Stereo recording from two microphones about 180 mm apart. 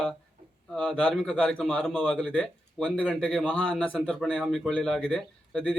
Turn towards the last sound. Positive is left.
turn(degrees=5)  # may be behind; listen again after turning